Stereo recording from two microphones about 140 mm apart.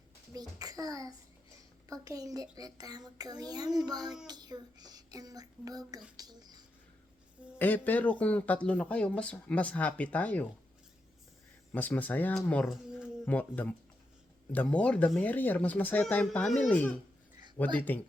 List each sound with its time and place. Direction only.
0.3 s a child's voice: 25° right (ahead or behind)
7.6 s speech: 10° left (ahead or behind)
11.7 s speech: 10° left (ahead or behind)
12.6 s speech: centre (ahead or behind)
13.3 s speech: 10° left (ahead or behind)
14.5 s speech: 10° left (ahead or behind)